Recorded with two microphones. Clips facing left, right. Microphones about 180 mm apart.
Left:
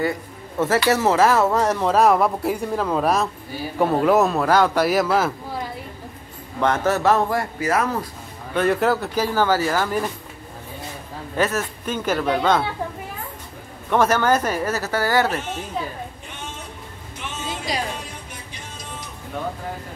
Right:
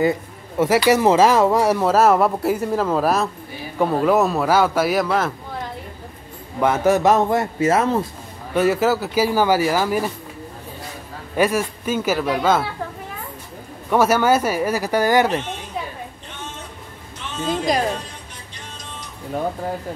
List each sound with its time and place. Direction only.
0.8 s a man's voice: 15° right (ahead or behind); by 5.6 s 5° left (ahead or behind)
6.6 s a man's voice: 10° right (ahead or behind); by 8.1 s 25° right (ahead or behind)
8.5 s speech: 5° right (ahead or behind)
11.3 s speech: 10° right (ahead or behind)
13.8 s speech: 10° right (ahead or behind)
17.5 s speech: 50° right (ahead or behind)